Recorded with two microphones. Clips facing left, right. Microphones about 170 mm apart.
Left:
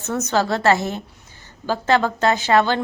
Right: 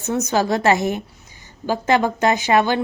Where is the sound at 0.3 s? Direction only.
15° right (ahead or behind).